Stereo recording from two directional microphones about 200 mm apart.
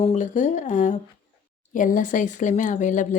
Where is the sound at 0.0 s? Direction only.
35° left (ahead or behind).